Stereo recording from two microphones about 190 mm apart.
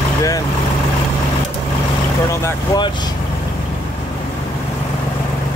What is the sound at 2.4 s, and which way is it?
Speech, 20° left (ahead or behind).